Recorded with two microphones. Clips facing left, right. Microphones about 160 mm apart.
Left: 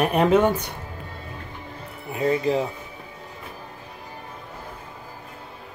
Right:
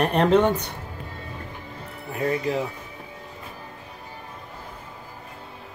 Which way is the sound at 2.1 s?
25° left (ahead or behind).